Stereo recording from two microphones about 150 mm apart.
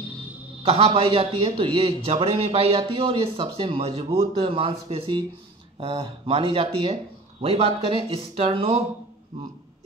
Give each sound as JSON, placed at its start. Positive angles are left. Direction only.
{"t": 0.7, "sound": "a man's voice", "side_deg": -40}